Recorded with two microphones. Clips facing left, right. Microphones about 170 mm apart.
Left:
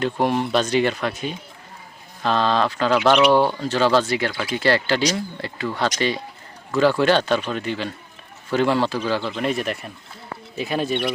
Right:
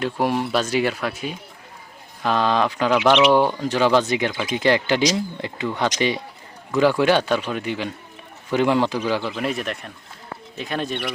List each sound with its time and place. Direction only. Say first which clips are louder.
0.0 s speech: left 1 dB; 5° right (ahead or behind)